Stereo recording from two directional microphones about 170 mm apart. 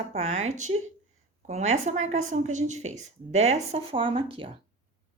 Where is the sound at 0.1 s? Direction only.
40° right (ahead or behind).